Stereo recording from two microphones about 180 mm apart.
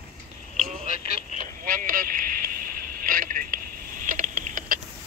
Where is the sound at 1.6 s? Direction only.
50° right (ahead or behind).